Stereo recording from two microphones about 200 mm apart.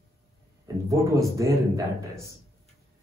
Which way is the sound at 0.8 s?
15° right (ahead or behind).